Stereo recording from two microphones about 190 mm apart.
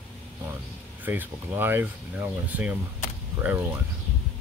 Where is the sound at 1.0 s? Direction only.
10° right (ahead or behind).